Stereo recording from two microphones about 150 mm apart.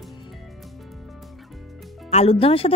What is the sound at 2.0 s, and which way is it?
Speech, 45° left (ahead or behind).